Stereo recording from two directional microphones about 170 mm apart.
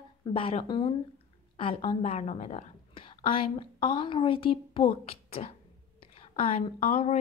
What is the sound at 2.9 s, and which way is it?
A woman's voice, 30° left (ahead or behind).